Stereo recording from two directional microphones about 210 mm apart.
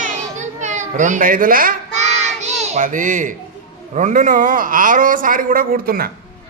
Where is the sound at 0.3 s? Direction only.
35° right (ahead or behind).